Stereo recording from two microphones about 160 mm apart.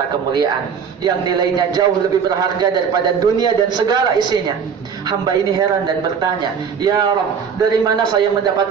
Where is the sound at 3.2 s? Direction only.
25° right (ahead or behind).